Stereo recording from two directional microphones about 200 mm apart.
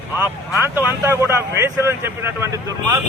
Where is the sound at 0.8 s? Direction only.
10° right (ahead or behind).